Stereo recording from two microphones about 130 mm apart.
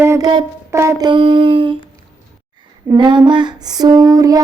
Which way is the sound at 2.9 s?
35° right (ahead or behind).